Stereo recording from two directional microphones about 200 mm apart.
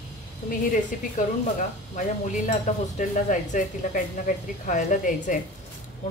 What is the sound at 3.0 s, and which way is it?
Speech, 40° left (ahead or behind).